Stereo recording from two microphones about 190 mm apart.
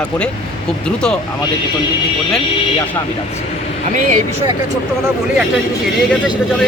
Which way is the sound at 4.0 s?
40° right (ahead or behind).